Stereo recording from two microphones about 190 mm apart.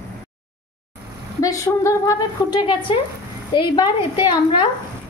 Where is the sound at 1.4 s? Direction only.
15° left (ahead or behind).